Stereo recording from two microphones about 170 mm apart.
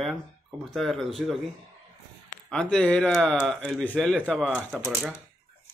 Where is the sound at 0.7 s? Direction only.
Centre (ahead or behind).